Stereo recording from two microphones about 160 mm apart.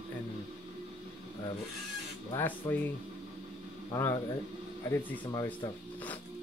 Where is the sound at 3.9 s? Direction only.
20° left (ahead or behind).